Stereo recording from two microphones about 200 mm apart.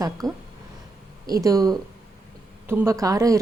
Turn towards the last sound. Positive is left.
turn(degrees=-15)  # may be behind; listen again after turning